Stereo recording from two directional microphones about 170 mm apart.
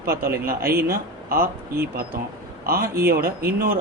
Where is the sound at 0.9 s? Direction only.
60° right (ahead or behind).